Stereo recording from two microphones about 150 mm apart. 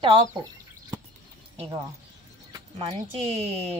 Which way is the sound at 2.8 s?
45° right (ahead or behind).